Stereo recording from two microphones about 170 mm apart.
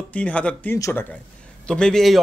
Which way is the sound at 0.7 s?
20° left (ahead or behind).